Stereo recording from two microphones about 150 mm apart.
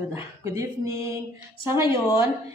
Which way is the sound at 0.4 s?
20° right (ahead or behind).